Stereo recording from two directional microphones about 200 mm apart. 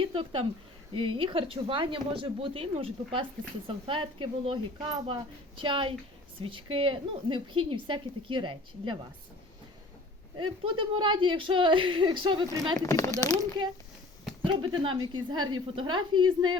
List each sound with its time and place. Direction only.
0.0 s speech: 25° right (ahead or behind)
10.7 s speech: 25° right (ahead or behind)
12.8 s speech: 15° left (ahead or behind)
13.6 s speech: 25° right (ahead or behind)